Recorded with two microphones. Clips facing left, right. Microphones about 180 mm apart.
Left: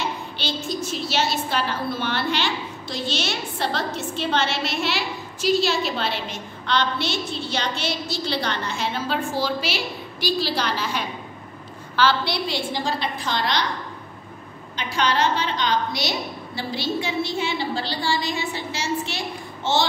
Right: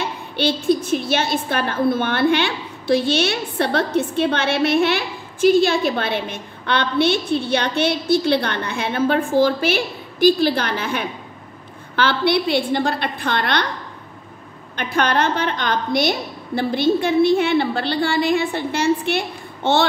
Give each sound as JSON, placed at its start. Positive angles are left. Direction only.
{"t": 0.0, "sound": "a woman's voice", "side_deg": -60}
{"t": 14.8, "sound": "a woman's voice", "side_deg": -55}